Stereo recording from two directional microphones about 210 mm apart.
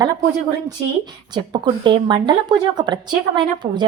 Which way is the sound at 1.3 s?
20° right (ahead or behind).